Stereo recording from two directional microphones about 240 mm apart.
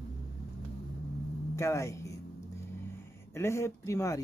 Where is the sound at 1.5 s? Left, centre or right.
Centre.